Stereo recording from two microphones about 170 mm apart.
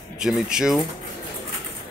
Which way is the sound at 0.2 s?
5° right (ahead or behind).